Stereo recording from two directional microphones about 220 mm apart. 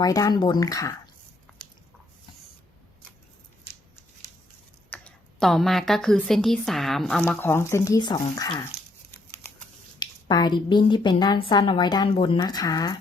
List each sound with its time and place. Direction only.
0.0 s speech: 15° left (ahead or behind)
4.9 s speech: 5° left (ahead or behind)
10.0 s a woman's voice: 20° left (ahead or behind)